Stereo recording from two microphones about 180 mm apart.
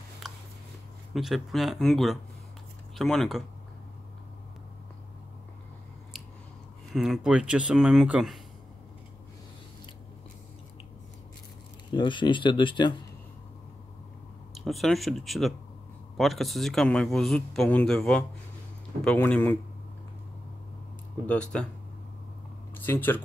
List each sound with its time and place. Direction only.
0.2 s a sound: centre (ahead or behind)
1.1 s speech: centre (ahead or behind)
6.9 s speech: centre (ahead or behind)
11.9 s speech: 25° left (ahead or behind)
14.5 s speech: centre (ahead or behind)
21.3 s speech: 5° left (ahead or behind)
22.8 s speech: 10° left (ahead or behind)